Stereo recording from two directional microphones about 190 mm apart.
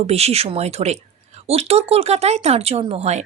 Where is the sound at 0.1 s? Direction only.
35° right (ahead or behind).